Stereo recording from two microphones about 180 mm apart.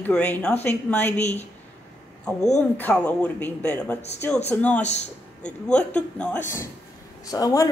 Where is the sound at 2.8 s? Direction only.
5° left (ahead or behind).